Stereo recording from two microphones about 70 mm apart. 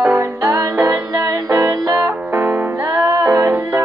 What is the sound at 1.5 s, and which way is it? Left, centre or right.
Music, right.